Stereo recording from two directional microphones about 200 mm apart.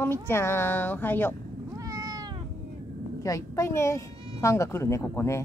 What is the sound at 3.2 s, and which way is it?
Speech, 15° left (ahead or behind).